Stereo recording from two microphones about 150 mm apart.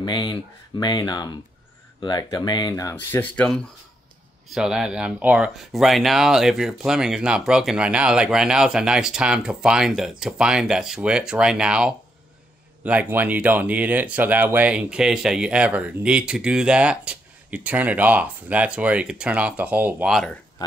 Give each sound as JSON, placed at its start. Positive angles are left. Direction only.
{"t": 0.0, "sound": "speech", "side_deg": 30}
{"t": 2.7, "sound": "speech", "side_deg": 20}
{"t": 4.6, "sound": "speech", "side_deg": -5}